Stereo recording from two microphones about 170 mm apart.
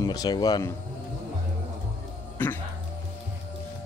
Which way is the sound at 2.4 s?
10° left (ahead or behind).